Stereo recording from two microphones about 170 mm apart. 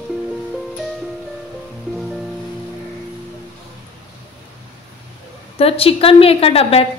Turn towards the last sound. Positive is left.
turn(degrees=35)  # may be behind; listen again after turning